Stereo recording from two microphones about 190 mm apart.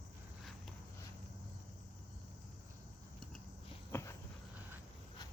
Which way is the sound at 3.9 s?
15° left (ahead or behind).